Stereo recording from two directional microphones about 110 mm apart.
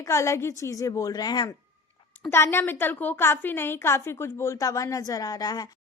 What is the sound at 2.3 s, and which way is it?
A woman's voice, 20° left (ahead or behind).